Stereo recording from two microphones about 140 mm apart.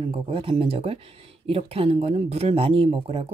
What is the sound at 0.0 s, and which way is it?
Speech, 40° right (ahead or behind).